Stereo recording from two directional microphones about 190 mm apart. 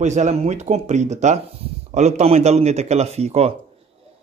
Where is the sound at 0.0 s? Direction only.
35° right (ahead or behind).